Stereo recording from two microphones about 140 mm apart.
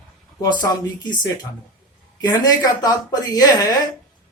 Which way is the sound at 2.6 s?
30° left (ahead or behind).